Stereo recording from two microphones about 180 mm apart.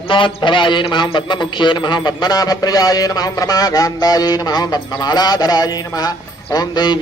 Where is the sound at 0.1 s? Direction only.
25° left (ahead or behind).